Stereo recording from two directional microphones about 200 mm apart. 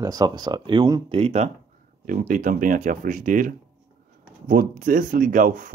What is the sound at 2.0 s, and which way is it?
Speech, 45° right (ahead or behind).